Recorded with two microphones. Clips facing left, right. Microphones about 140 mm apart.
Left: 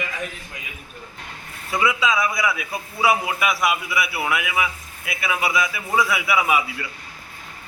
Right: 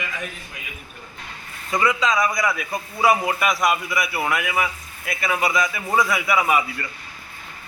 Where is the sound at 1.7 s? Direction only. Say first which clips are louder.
Right 1 dB; 5° left (ahead or behind).